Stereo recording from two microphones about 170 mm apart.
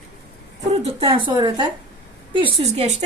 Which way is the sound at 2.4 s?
40° right (ahead or behind).